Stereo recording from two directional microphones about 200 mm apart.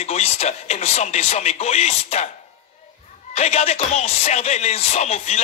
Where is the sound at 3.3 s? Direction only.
30° left (ahead or behind).